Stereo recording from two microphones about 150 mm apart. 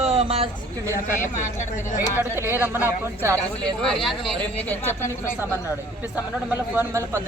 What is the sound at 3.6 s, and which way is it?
Speech, 5° left (ahead or behind).